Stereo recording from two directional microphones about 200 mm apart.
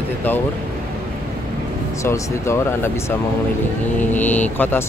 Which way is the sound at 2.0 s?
15° left (ahead or behind).